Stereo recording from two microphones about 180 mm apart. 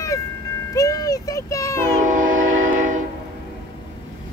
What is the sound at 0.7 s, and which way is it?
A child's voice, 20° left (ahead or behind).